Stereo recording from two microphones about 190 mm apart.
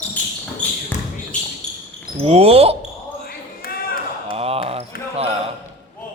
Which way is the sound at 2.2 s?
30° right (ahead or behind).